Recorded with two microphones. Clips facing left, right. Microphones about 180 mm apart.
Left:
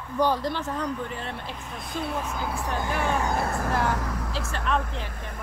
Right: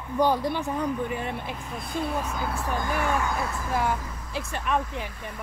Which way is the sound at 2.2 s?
10° left (ahead or behind).